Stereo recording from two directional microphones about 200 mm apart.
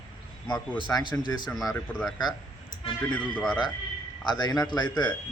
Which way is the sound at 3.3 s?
Centre (ahead or behind).